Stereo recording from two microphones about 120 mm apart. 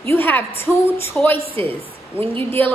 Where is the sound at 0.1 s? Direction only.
15° left (ahead or behind).